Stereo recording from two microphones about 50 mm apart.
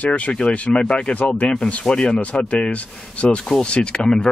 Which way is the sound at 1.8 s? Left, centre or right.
Centre.